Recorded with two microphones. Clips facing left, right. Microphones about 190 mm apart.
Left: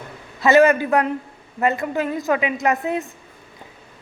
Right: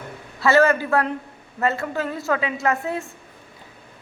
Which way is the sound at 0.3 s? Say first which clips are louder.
Left 3 dB; 20° left (ahead or behind).